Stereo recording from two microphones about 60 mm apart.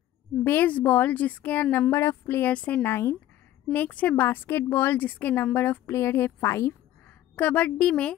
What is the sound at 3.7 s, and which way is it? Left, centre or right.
Speech, left.